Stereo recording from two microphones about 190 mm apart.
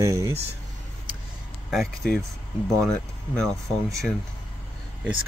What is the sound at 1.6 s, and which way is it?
Speech, centre (ahead or behind).